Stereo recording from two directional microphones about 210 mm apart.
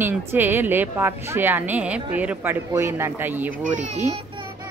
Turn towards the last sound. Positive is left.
turn(degrees=-35)  # may be behind; listen again after turning